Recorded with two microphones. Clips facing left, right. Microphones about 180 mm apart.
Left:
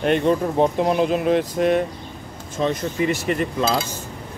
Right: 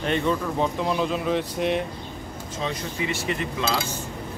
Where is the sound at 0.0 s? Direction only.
55° left (ahead or behind).